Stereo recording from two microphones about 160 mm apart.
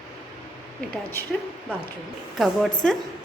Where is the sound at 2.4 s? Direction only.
Centre (ahead or behind).